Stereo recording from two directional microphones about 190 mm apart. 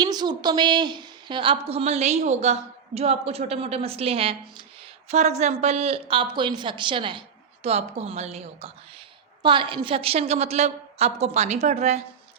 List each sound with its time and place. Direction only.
0.0 s a woman's voice: 20° right (ahead or behind)